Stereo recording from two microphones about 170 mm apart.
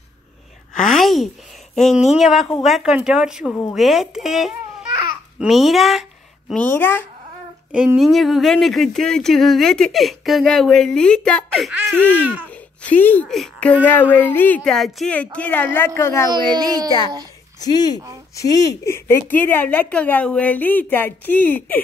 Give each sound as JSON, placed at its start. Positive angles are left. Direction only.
{"t": 0.7, "sound": "a sound", "side_deg": 50}
{"t": 1.0, "sound": "a sound", "side_deg": 0}
{"t": 2.1, "sound": "speech", "side_deg": 0}
{"t": 6.5, "sound": "a woman's voice", "side_deg": 10}
{"t": 7.7, "sound": "a woman's voice", "side_deg": -5}
{"t": 16.3, "sound": "a child's voice", "side_deg": -25}
{"t": 17.6, "sound": "a woman's voice", "side_deg": 25}